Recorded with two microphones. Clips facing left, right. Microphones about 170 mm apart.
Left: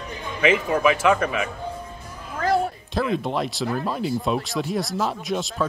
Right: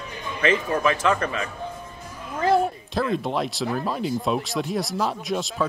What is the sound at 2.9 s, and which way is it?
Speech, centre (ahead or behind).